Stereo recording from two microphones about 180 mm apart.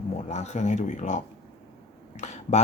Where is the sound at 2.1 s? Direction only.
40° left (ahead or behind).